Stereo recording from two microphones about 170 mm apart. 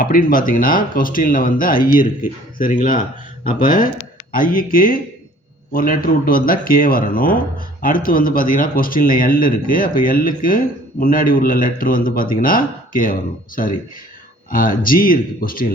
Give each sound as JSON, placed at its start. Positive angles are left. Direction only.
{"t": 0.0, "sound": "speech", "side_deg": 55}
{"t": 14.5, "sound": "speech", "side_deg": 55}